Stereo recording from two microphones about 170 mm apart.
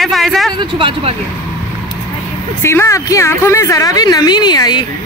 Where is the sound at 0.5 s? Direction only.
30° right (ahead or behind).